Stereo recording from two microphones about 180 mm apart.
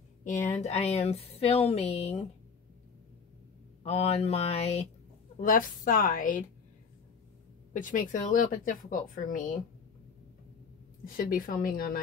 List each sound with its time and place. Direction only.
0.2 s speech: 45° left (ahead or behind)
3.8 s speech: 35° left (ahead or behind)
5.4 s speech: 50° left (ahead or behind)
7.7 s speech: 45° left (ahead or behind)
11.1 s speech: 50° left (ahead or behind)